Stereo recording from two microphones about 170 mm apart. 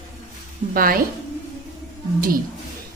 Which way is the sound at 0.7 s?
60° right (ahead or behind).